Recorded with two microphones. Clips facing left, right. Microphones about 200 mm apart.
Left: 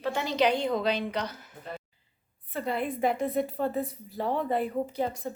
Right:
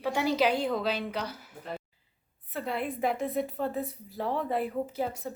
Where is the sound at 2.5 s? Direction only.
Centre (ahead or behind).